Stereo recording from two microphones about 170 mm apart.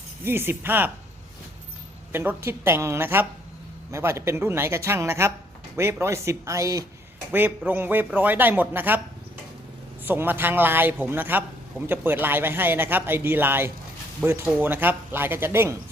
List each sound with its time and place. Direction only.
0.3 s speech: 15° right (ahead or behind)
2.1 s speech: 15° right (ahead or behind)
10.0 s speech: 10° right (ahead or behind)